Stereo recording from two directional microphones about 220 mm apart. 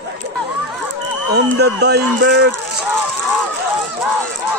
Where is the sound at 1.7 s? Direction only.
50° right (ahead or behind).